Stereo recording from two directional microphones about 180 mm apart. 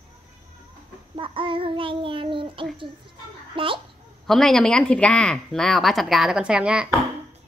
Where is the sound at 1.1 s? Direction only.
30° right (ahead or behind).